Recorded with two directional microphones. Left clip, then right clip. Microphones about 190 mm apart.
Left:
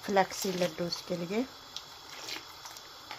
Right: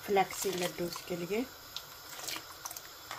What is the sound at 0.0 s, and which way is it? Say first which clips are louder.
Speech: left 2 dB; 10° left (ahead or behind).